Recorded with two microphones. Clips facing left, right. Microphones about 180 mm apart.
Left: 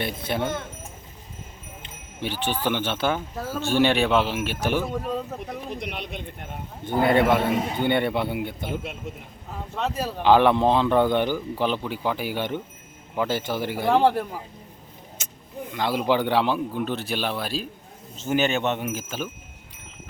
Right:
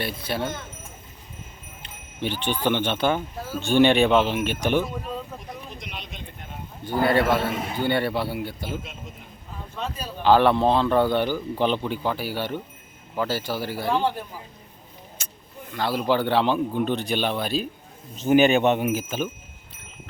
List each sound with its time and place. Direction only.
0.0 s a man's voice: 20° left (ahead or behind)
2.2 s a man's voice: 10° left (ahead or behind)
4.9 s a man's voice: 75° left (ahead or behind)
5.8 s speech: 60° left (ahead or behind)
6.8 s a man's voice: 25° left (ahead or behind)
9.7 s speech: 90° left
10.2 s speech: 15° left (ahead or behind)
11.5 s a man's voice: 5° left (ahead or behind)
13.8 s a man's voice: 75° left (ahead or behind)
15.2 s vehicle: 20° left (ahead or behind)
15.7 s a man's voice: 15° left (ahead or behind); by 17.7 s centre (ahead or behind)
18.2 s speech: 15° right (ahead or behind)
19.0 s a man's voice: centre (ahead or behind)